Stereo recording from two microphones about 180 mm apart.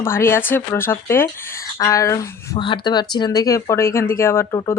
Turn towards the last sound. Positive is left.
turn(degrees=20)  # may be behind; listen again after turning